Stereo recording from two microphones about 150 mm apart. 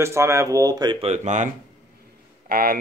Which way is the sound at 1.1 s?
55° right (ahead or behind).